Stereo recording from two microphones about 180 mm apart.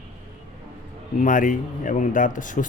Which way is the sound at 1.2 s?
45° left (ahead or behind).